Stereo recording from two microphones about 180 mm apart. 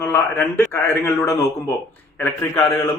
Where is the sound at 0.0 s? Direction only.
10° left (ahead or behind).